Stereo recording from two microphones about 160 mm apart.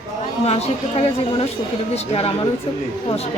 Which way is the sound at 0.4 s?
40° left (ahead or behind).